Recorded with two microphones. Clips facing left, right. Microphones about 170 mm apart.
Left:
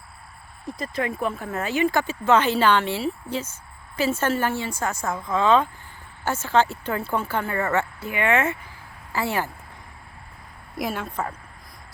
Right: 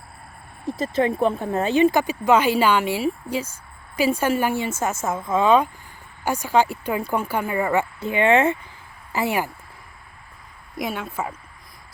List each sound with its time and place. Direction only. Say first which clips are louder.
0.8 s speech: right 6 dB; 25° right (ahead or behind)
8.0 s speech: right 7 dB; 25° right (ahead or behind)
9.1 s speech: right 2 dB; 15° right (ahead or behind)
10.8 s speech: even; centre (ahead or behind)